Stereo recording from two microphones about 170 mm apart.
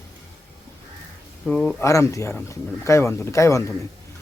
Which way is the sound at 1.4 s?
5° left (ahead or behind).